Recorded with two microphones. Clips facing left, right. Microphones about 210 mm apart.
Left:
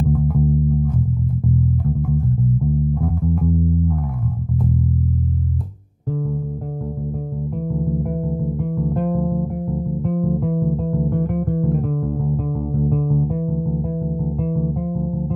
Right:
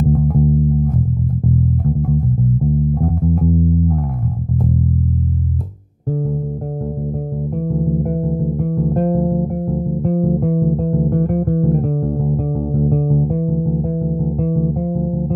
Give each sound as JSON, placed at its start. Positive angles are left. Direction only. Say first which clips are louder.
{"t": 0.0, "sound": "bass guitar", "louder": "right 3 dB", "side_deg": -35}
{"t": 2.6, "sound": "music", "louder": "right 3 dB", "side_deg": -35}
{"t": 7.7, "sound": "music", "louder": "right 4 dB", "side_deg": -40}